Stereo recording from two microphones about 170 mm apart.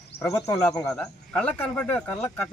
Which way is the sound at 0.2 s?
20° left (ahead or behind).